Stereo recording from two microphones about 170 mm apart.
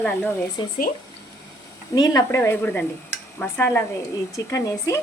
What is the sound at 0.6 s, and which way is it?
Speech, 30° left (ahead or behind).